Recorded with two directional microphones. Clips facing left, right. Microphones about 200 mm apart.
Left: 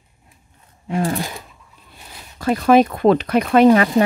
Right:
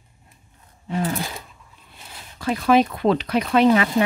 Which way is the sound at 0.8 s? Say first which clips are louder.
Left 3 dB; 45° left (ahead or behind).